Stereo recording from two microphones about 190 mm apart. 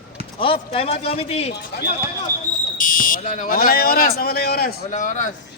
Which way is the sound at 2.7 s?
45° left (ahead or behind).